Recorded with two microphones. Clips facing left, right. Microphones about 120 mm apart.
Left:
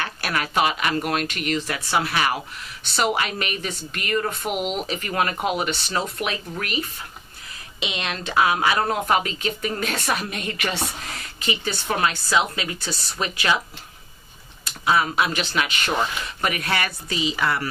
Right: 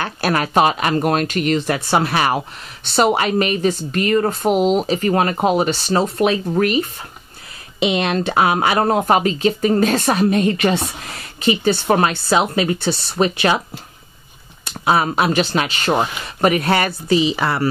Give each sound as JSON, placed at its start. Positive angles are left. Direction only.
{"t": 0.0, "sound": "speech", "side_deg": -35}
{"t": 7.8, "sound": "speech", "side_deg": -45}
{"t": 15.2, "sound": "speech", "side_deg": -35}
{"t": 15.9, "sound": "speech", "side_deg": -45}
{"t": 16.4, "sound": "speech", "side_deg": -30}